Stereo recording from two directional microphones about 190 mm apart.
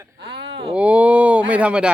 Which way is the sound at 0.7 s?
5° right (ahead or behind).